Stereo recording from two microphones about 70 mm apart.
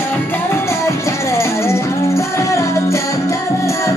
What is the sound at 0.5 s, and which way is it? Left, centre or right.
Music, left.